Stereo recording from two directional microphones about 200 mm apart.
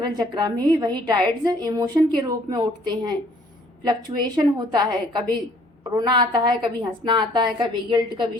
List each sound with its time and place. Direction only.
0.0 s a woman's voice: 20° right (ahead or behind)